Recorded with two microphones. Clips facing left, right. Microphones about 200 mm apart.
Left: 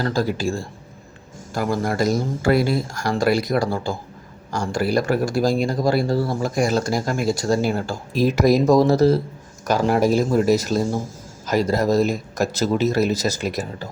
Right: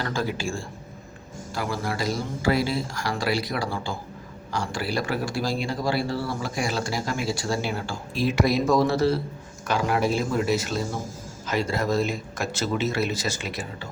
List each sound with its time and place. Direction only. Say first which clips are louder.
0.0 s speech: left 6 dB; 40° left (ahead or behind)
1.5 s speech: left 7 dB; 50° left (ahead or behind)